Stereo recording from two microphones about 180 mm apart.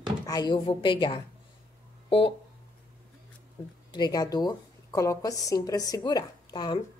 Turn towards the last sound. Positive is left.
turn(degrees=25)  # may be behind; listen again after turning